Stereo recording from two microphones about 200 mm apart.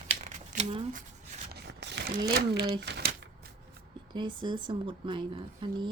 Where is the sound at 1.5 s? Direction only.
55° right (ahead or behind).